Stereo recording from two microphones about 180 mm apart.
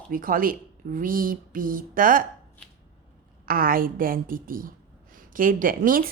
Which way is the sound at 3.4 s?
50° right (ahead or behind).